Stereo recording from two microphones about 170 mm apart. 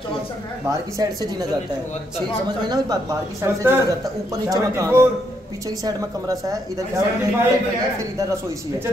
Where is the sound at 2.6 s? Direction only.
25° right (ahead or behind).